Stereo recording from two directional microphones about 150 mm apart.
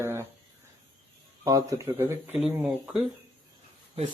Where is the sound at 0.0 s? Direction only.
15° right (ahead or behind).